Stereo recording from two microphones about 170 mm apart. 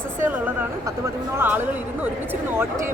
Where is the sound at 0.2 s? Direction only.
10° right (ahead or behind).